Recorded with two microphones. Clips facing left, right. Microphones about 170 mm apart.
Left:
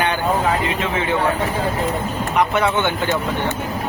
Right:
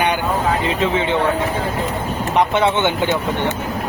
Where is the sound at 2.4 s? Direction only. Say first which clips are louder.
Right 2 dB; 25° right (ahead or behind).